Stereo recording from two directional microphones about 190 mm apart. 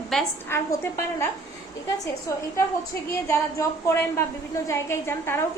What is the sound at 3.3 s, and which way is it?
A woman's voice, 15° left (ahead or behind).